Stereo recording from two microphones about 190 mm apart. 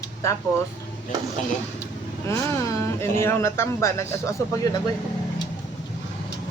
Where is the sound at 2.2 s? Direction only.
15° left (ahead or behind).